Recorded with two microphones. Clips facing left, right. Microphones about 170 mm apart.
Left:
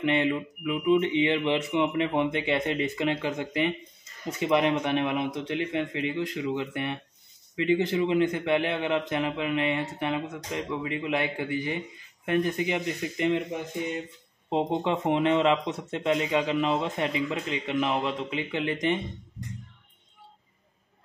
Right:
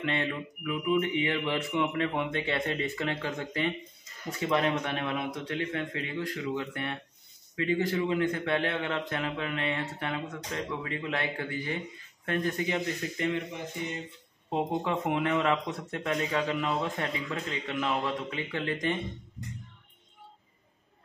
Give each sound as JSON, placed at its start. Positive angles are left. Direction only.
{"t": 0.0, "sound": "a man's voice", "side_deg": 20}
{"t": 14.5, "sound": "speech", "side_deg": 20}